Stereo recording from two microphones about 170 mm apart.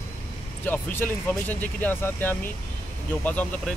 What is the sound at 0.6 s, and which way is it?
Speech, 10° left (ahead or behind).